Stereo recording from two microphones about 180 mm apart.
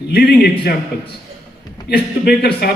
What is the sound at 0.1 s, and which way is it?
Speech, 60° left (ahead or behind).